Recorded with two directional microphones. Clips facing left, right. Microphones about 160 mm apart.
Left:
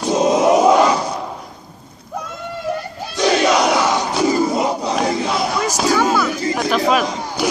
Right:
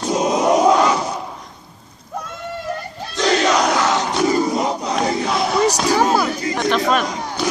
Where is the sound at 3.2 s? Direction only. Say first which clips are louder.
Left 2 dB; 10° left (ahead or behind).